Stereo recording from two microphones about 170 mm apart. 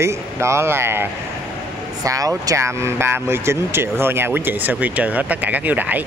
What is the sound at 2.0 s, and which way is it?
Speech, 20° right (ahead or behind).